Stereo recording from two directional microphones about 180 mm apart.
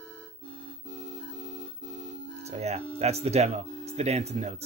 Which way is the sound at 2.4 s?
35° right (ahead or behind).